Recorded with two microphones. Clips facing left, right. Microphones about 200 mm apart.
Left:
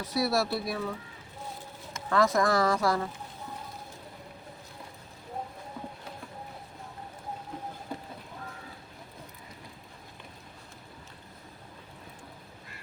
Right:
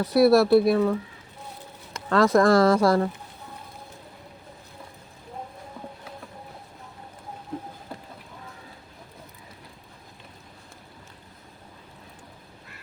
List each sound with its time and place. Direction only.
0.0 s speech: 60° right (ahead or behind)
2.0 s speech: 70° right (ahead or behind)